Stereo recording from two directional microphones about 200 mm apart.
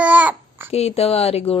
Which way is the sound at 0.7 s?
30° left (ahead or behind).